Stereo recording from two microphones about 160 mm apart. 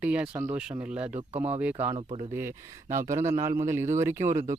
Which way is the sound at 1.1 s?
40° right (ahead or behind).